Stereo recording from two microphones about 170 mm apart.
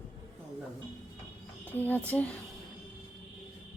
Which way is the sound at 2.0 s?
10° left (ahead or behind).